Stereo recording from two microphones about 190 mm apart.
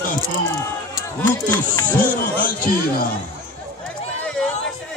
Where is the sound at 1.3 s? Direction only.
15° left (ahead or behind).